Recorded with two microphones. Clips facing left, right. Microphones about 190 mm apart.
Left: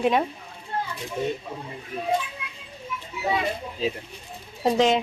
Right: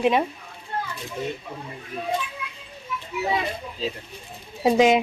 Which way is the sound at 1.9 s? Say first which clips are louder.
Even; centre (ahead or behind).